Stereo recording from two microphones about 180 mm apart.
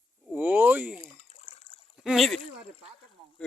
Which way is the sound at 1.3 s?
35° left (ahead or behind).